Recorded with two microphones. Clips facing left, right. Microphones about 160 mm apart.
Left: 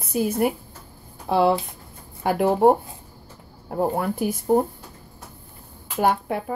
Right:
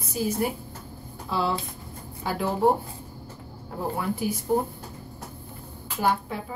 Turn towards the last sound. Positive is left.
turn(degrees=60)  # may be behind; listen again after turning